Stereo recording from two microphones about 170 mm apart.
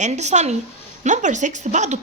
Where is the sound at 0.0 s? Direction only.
40° right (ahead or behind).